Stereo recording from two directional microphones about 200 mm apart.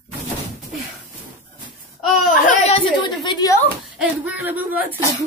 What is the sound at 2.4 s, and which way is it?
A woman's voice, 30° left (ahead or behind).